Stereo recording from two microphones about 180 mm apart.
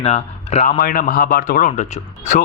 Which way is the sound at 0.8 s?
50° left (ahead or behind).